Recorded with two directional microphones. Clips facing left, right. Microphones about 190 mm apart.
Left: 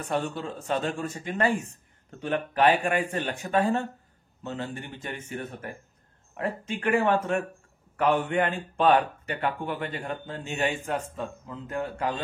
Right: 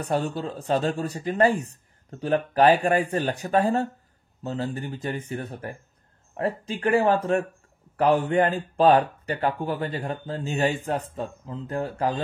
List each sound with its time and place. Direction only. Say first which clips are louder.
0.0 s speech: right 3 dB; 35° right (ahead or behind)